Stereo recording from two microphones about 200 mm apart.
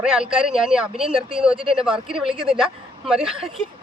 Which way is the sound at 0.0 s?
5° right (ahead or behind).